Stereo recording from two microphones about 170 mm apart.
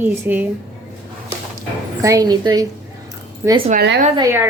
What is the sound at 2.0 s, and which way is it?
A woman's voice, 20° right (ahead or behind).